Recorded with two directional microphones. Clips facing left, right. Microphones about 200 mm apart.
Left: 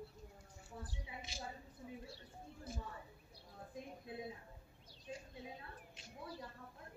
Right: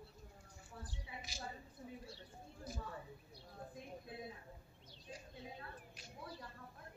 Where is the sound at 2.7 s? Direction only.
25° left (ahead or behind).